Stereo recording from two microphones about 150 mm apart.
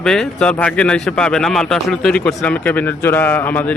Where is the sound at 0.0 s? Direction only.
5° left (ahead or behind).